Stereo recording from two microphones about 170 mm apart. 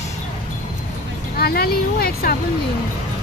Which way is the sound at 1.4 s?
65° left (ahead or behind).